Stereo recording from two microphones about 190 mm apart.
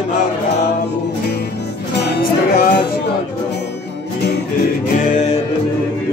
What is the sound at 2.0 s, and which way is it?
Music, 60° left (ahead or behind).